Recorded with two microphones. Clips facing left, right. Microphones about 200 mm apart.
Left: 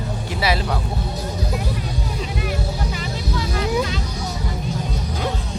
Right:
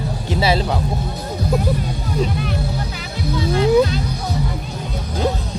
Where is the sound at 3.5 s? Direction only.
35° right (ahead or behind).